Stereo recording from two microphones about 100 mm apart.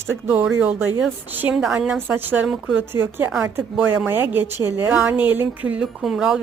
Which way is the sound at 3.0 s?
25° right (ahead or behind).